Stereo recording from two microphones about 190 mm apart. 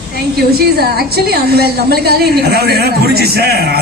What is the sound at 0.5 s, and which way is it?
A woman's voice, 55° right (ahead or behind).